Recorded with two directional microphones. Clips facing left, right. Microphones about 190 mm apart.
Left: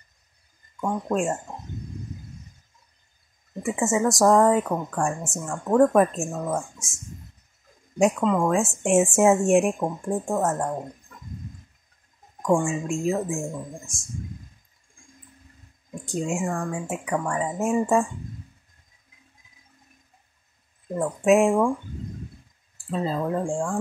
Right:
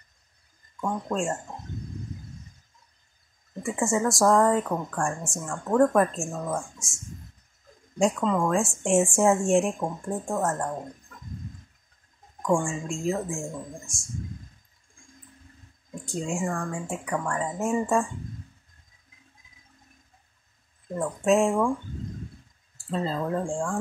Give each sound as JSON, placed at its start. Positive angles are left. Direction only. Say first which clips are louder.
{"t": 0.7, "sound": "speech", "louder": "left 3 dB", "side_deg": 15}
{"t": 3.6, "sound": "speech", "louder": "left 2 dB", "side_deg": 20}
{"t": 8.2, "sound": "speech", "louder": "left 2 dB", "side_deg": 10}
{"t": 12.6, "sound": "speech", "louder": "left 4 dB", "side_deg": 15}
{"t": 16.1, "sound": "speech", "louder": "left 3 dB", "side_deg": 20}
{"t": 20.9, "sound": "speech", "louder": "left 3 dB", "side_deg": 15}
{"t": 22.8, "sound": "speech", "louder": "left 2 dB", "side_deg": 10}